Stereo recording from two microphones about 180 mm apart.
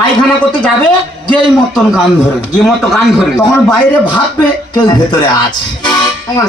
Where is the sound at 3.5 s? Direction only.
25° left (ahead or behind).